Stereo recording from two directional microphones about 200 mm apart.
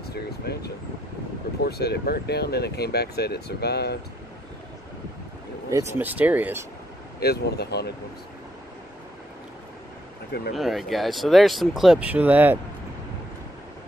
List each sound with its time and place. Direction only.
0.0 s air conditioning: 55° left (ahead or behind)
1.6 s speech: 55° left (ahead or behind)
5.7 s speech: 10° right (ahead or behind)
7.2 s speech: 55° left (ahead or behind)
10.5 s speech: centre (ahead or behind)